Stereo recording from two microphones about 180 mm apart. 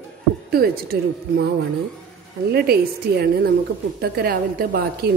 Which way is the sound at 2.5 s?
60° right (ahead or behind).